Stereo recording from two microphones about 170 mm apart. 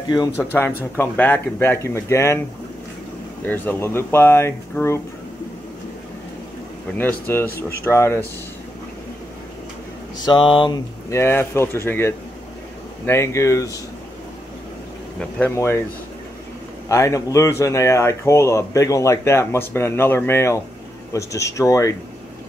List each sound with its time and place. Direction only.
0.4 s speech: 10° left (ahead or behind)
3.4 s speech: 10° left (ahead or behind)
7.0 s speech: 10° left (ahead or behind)
10.1 s speech: 25° left (ahead or behind)
15.3 s speech: 10° left (ahead or behind)
16.9 s speech: 20° left (ahead or behind)